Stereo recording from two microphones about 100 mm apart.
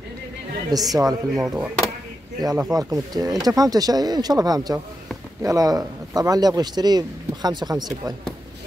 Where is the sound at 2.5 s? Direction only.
35° right (ahead or behind).